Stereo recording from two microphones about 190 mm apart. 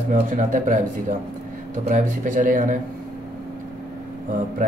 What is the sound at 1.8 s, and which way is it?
Speech, 45° right (ahead or behind).